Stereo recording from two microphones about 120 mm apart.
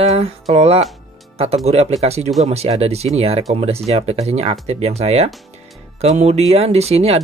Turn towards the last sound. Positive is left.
turn(degrees=-60)  # may be behind; listen again after turning